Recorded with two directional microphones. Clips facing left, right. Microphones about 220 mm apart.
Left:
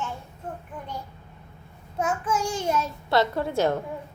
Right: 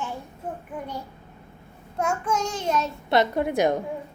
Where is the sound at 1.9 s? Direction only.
5° left (ahead or behind).